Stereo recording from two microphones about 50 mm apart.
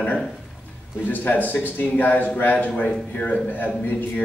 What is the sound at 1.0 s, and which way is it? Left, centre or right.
A man's voice, left.